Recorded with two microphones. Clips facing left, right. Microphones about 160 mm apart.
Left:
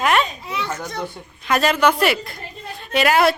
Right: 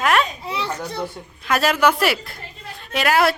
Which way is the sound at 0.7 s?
30° right (ahead or behind).